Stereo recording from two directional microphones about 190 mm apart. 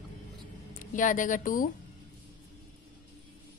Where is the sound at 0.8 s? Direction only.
45° left (ahead or behind).